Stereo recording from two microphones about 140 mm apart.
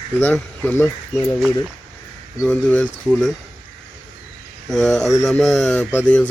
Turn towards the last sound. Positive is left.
turn(degrees=10)  # may be behind; listen again after turning